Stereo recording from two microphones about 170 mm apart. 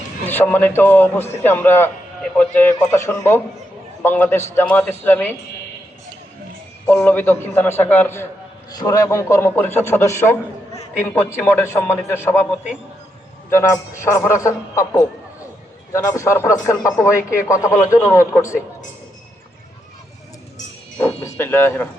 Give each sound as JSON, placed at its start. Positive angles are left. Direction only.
{"t": 0.3, "sound": "a man's voice", "side_deg": 10}
{"t": 6.8, "sound": "a man's voice", "side_deg": 15}
{"t": 21.0, "sound": "a man's voice", "side_deg": 15}